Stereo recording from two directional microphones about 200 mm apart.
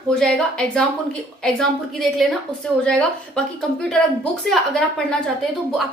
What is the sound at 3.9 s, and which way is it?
A woman's voice, centre (ahead or behind).